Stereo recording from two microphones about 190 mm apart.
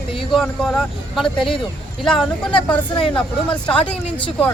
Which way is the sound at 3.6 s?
5° left (ahead or behind).